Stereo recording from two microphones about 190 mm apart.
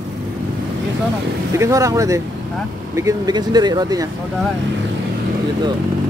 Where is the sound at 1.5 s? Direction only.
15° right (ahead or behind).